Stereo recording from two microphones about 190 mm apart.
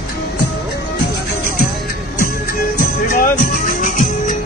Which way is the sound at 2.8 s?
45° left (ahead or behind).